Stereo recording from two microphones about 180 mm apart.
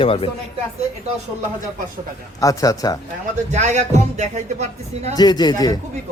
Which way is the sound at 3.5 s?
40° right (ahead or behind).